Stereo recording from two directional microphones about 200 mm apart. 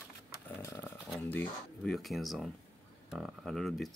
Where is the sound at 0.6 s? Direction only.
15° left (ahead or behind).